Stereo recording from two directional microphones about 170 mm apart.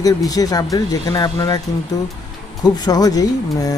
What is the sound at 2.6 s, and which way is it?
Speech, 25° left (ahead or behind).